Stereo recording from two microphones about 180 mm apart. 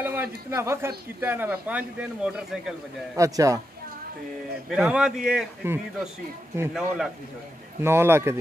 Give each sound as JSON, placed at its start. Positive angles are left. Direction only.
{"t": 0.0, "sound": "speech", "side_deg": -10}
{"t": 3.2, "sound": "speech", "side_deg": -20}
{"t": 4.6, "sound": "a man's voice", "side_deg": -5}
{"t": 7.8, "sound": "speech", "side_deg": -15}